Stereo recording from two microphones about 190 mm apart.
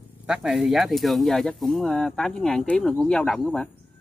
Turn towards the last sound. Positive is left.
turn(degrees=5)  # may be behind; listen again after turning